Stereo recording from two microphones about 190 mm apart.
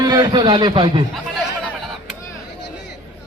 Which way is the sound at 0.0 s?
20° right (ahead or behind).